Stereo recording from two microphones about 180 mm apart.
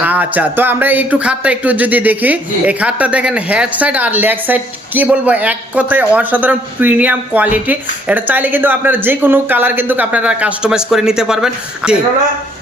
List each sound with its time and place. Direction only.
0.0 s speech: 10° right (ahead or behind)